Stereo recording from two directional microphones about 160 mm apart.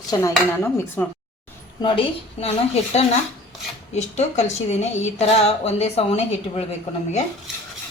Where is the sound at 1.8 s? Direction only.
30° left (ahead or behind).